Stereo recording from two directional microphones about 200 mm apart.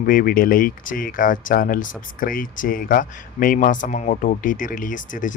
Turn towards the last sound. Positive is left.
turn(degrees=40)  # may be behind; listen again after turning